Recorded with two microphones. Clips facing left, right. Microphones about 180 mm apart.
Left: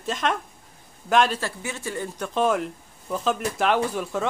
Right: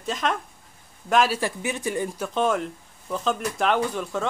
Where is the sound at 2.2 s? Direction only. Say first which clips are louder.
Left 2 dB; centre (ahead or behind).